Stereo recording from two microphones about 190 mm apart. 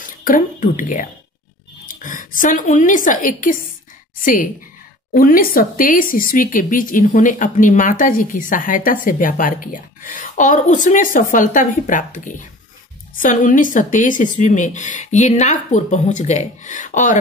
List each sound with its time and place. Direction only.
0.0 s a woman's voice: 45° left (ahead or behind)